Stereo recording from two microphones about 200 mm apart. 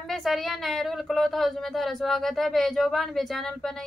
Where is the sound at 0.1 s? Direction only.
Centre (ahead or behind).